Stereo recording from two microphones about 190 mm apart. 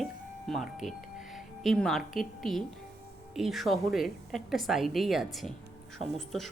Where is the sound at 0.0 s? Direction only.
Centre (ahead or behind).